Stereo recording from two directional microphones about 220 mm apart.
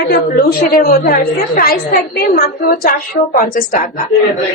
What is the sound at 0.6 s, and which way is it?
A woman's voice, 35° left (ahead or behind).